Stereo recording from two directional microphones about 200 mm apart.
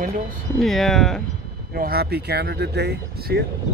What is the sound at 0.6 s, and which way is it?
Speech, centre (ahead or behind).